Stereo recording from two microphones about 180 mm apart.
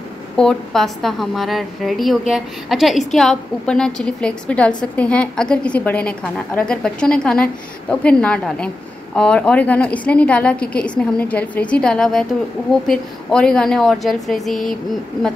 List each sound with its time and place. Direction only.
0.4 s a woman's voice: 5° left (ahead or behind)